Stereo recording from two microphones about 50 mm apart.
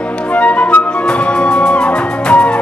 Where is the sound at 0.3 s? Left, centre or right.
Left.